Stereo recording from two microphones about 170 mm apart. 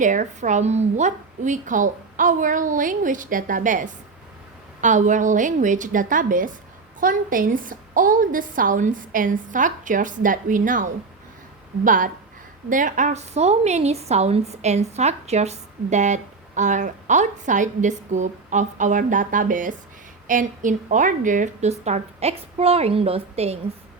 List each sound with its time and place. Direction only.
0.0 s a woman's voice: 45° right (ahead or behind)